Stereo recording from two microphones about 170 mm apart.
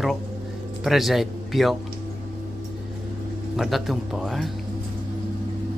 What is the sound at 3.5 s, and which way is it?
Speech, centre (ahead or behind).